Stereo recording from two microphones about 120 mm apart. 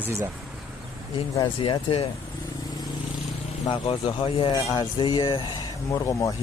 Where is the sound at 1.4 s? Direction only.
45° left (ahead or behind).